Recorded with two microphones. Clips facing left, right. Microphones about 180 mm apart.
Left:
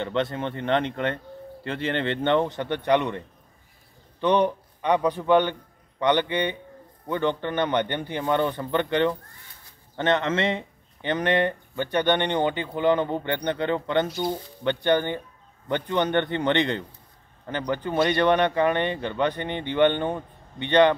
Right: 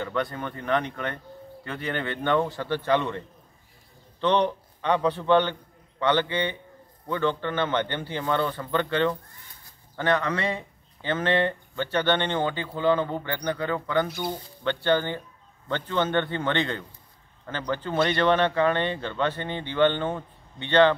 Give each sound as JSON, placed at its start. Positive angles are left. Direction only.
{"t": 0.0, "sound": "speech", "side_deg": 25}
{"t": 4.2, "sound": "a man's voice", "side_deg": 15}